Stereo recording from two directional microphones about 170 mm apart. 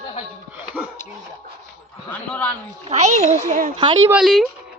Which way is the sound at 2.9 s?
40° right (ahead or behind).